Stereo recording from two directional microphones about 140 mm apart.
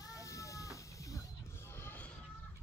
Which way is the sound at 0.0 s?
25° left (ahead or behind).